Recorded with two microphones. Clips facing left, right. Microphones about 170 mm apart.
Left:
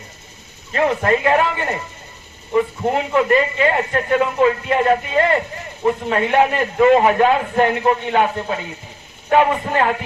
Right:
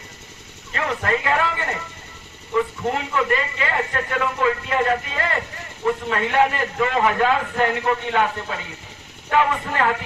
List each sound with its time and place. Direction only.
0.7 s speech: 25° left (ahead or behind)